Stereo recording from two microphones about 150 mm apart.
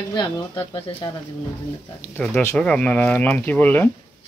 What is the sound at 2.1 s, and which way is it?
Speech, 15° left (ahead or behind).